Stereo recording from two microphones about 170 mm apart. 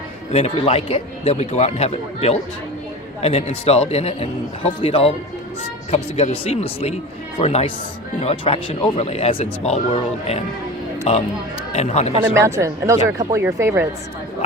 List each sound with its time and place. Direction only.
0.3 s speech: 40° left (ahead or behind)
12.2 s speech: 15° right (ahead or behind)